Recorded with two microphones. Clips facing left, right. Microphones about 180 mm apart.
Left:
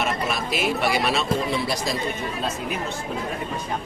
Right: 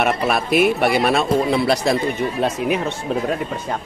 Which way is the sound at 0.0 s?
60° right (ahead or behind).